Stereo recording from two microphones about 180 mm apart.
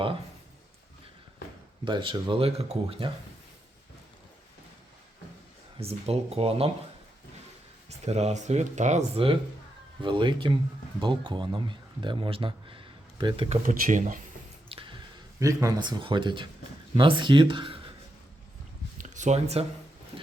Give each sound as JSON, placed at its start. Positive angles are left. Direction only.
{"t": 1.8, "sound": "speech", "side_deg": -30}
{"t": 5.7, "sound": "speech", "side_deg": -35}
{"t": 7.9, "sound": "speech", "side_deg": -40}
{"t": 13.7, "sound": "speech", "side_deg": -45}
{"t": 14.7, "sound": "squish", "side_deg": -30}
{"t": 15.4, "sound": "speech", "side_deg": -20}
{"t": 18.9, "sound": "a sound", "side_deg": -45}